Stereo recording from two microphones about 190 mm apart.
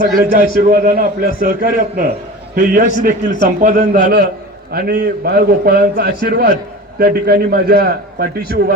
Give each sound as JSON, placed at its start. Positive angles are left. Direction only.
{"t": 0.2, "sound": "a man's voice", "side_deg": -50}
{"t": 3.9, "sound": "a man's voice", "side_deg": -55}